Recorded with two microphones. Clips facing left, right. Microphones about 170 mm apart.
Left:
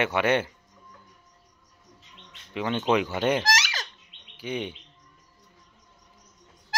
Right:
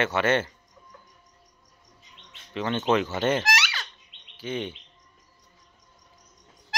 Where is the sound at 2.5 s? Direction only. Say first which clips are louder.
Even; 10° left (ahead or behind).